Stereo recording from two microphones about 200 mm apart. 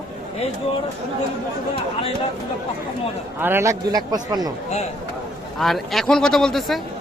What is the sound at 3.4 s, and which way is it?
Speech, 10° right (ahead or behind).